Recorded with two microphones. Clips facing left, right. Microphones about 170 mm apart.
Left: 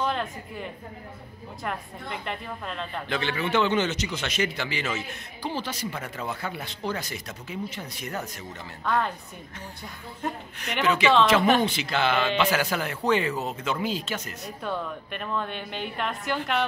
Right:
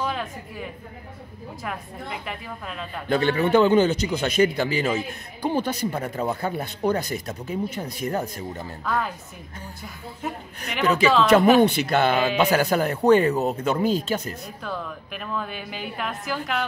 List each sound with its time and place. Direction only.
0.0 s a woman's voice: 5° right (ahead or behind)
3.1 s speech: 45° right (ahead or behind)
5.4 s speech: 55° right (ahead or behind)
5.9 s speech: 35° right (ahead or behind)
7.2 s speech: 35° right (ahead or behind)
8.8 s a woman's voice: 5° right (ahead or behind)
10.2 s a woman's voice: centre (ahead or behind)
11.6 s speech: 55° right (ahead or behind); by 14.3 s 35° right (ahead or behind)
14.6 s a woman's voice: centre (ahead or behind)